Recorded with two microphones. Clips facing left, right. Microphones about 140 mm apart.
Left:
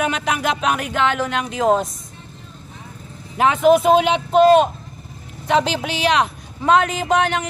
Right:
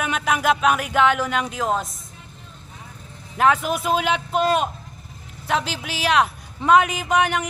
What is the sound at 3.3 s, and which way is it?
Speech, centre (ahead or behind).